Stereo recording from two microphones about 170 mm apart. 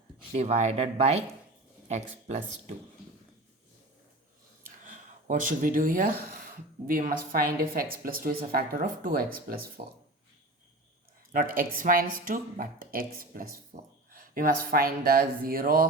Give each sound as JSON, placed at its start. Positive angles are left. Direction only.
{"t": 0.3, "sound": "speech", "side_deg": -40}
{"t": 4.9, "sound": "a woman's voice", "side_deg": -50}
{"t": 11.3, "sound": "a woman's voice", "side_deg": -55}
{"t": 13.7, "sound": "speech", "side_deg": -45}
{"t": 14.1, "sound": "a woman's voice", "side_deg": -55}